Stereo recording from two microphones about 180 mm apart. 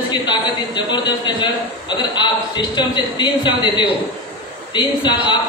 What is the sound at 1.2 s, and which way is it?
A man's voice, 25° left (ahead or behind).